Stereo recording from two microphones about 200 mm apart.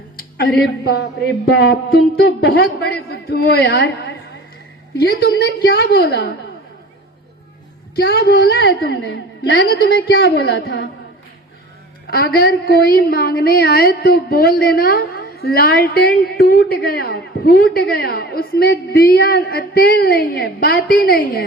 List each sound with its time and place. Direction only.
0.2 s a sound: 50° left (ahead or behind)
1.5 s a man's voice: 55° left (ahead or behind)
7.9 s a man's voice: 50° left (ahead or behind)
12.0 s a man's voice: 50° left (ahead or behind)